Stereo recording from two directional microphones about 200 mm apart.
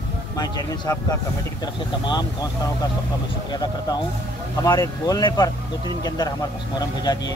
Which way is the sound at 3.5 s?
20° left (ahead or behind).